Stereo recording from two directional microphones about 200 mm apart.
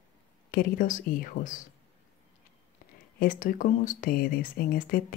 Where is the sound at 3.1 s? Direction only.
45° left (ahead or behind).